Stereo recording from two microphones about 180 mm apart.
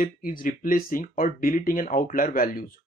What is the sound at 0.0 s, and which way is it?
Speech, 50° left (ahead or behind).